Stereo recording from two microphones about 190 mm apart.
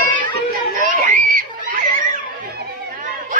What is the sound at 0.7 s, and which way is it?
Screaming, 45° right (ahead or behind).